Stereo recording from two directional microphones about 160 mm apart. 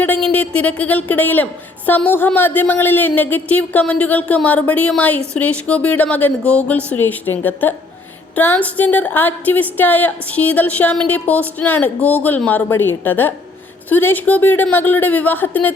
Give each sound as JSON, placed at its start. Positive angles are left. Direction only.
{"t": 0.0, "sound": "a woman's voice", "side_deg": 10}